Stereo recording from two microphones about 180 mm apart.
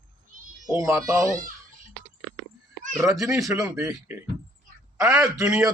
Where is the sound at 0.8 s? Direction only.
15° right (ahead or behind).